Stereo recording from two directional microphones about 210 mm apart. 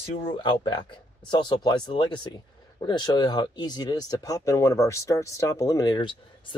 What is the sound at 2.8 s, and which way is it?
Speech, 20° left (ahead or behind).